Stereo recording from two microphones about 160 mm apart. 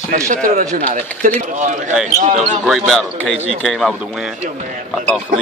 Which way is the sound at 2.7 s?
Centre (ahead or behind).